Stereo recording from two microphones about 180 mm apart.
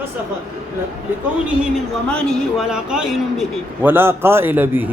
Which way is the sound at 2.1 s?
5° left (ahead or behind).